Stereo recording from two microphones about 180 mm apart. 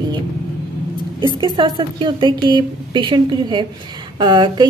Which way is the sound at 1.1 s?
25° right (ahead or behind).